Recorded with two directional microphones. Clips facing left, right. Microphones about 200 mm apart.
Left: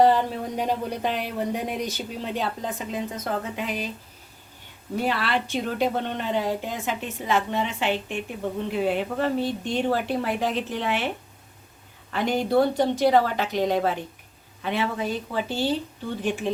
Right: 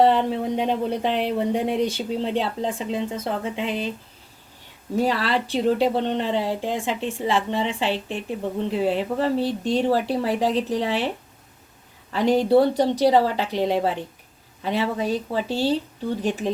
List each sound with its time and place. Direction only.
0.3 s speech: 25° right (ahead or behind)
5.0 s speech: 35° right (ahead or behind)
12.1 s speech: 35° right (ahead or behind)